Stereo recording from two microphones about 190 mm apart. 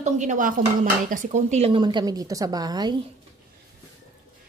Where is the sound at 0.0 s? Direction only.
40° right (ahead or behind); by 3.0 s 20° right (ahead or behind).